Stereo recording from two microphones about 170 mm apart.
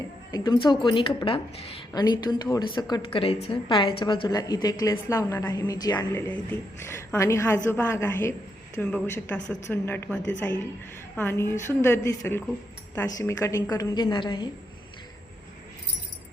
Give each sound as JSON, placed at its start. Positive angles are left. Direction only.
{"t": 0.3, "sound": "a woman's voice", "side_deg": 20}